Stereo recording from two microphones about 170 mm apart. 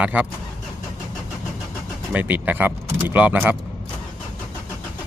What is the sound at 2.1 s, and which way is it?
Speech, 10° right (ahead or behind).